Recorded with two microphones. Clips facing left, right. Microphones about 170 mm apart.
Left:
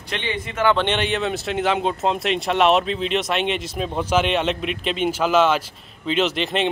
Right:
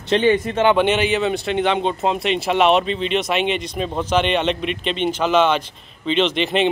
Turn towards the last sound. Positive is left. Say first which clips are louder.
# right 3 dB
turn(degrees=0)  # may be behind; listen again after turning